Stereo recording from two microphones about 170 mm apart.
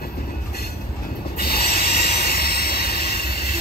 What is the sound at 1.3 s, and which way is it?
Train, 65° left (ahead or behind).